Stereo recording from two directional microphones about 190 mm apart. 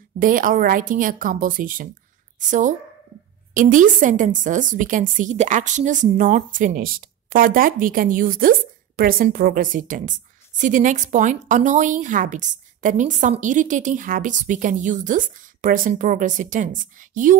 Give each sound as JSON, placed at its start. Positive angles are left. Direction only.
{"t": 0.2, "sound": "a woman's voice", "side_deg": -45}
{"t": 3.5, "sound": "a woman's voice", "side_deg": -40}